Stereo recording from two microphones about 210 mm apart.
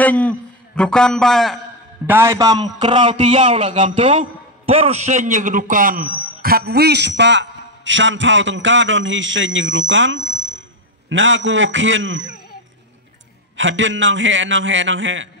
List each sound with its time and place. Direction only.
0.0 s a man's voice: 5° left (ahead or behind)
2.0 s a man's voice: 10° right (ahead or behind); by 3.9 s 35° right (ahead or behind)
3.9 s a man's voice: 25° right (ahead or behind); by 12.3 s 60° right (ahead or behind)
13.6 s a man's voice: 60° right (ahead or behind)